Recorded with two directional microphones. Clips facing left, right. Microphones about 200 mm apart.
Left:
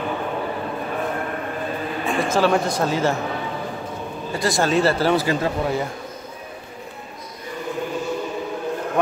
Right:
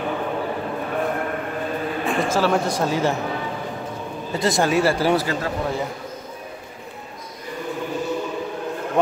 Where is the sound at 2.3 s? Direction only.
5° right (ahead or behind).